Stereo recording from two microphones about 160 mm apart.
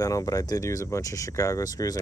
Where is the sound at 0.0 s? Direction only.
20° left (ahead or behind).